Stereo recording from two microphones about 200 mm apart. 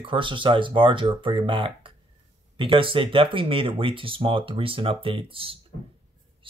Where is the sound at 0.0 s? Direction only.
25° right (ahead or behind).